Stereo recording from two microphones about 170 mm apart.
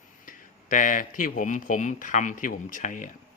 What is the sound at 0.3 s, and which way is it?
Speech, 50° left (ahead or behind).